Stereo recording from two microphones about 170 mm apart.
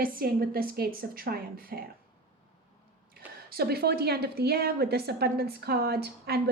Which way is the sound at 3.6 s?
70° right (ahead or behind).